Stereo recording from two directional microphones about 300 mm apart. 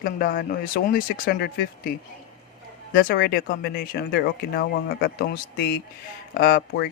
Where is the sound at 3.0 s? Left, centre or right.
Left.